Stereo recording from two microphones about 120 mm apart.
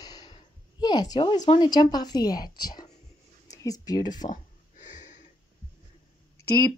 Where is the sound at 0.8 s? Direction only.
35° left (ahead or behind).